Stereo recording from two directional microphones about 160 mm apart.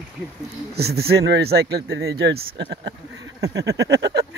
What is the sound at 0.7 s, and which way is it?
Speech, 80° right.